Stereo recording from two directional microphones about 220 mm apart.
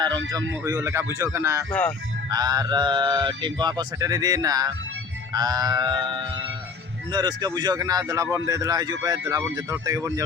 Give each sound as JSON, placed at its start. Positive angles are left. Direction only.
{"t": 0.6, "sound": "speech", "side_deg": -15}